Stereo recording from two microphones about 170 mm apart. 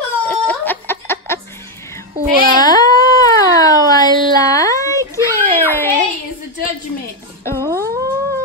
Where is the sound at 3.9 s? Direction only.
20° left (ahead or behind).